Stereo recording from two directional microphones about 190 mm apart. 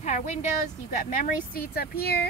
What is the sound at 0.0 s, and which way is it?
A woman's voice, 40° left (ahead or behind).